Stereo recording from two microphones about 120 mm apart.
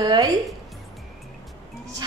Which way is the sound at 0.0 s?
35° right (ahead or behind).